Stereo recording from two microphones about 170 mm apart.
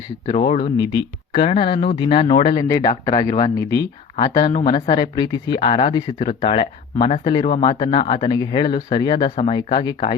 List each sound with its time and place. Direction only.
0.3 s speech: 35° left (ahead or behind); by 3.8 s 20° left (ahead or behind)
4.1 s speech: 30° left (ahead or behind)
9.3 s speech: 40° left (ahead or behind)
9.6 s speech: 25° left (ahead or behind)